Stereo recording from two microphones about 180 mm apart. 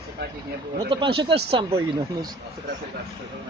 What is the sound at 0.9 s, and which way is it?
Speech, 30° right (ahead or behind).